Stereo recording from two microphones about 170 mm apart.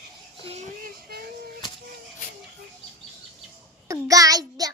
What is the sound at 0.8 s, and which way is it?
Speech, 60° right (ahead or behind).